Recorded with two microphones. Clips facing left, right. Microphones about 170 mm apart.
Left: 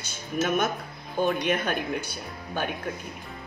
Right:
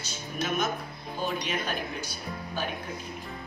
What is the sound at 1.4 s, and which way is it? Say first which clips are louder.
Speech: left 6 dB; 55° left (ahead or behind).